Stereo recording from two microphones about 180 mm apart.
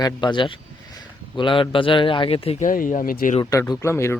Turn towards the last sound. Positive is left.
turn(degrees=15)  # may be behind; listen again after turning